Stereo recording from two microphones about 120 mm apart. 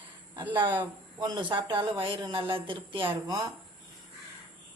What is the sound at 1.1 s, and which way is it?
Speech, 35° right (ahead or behind).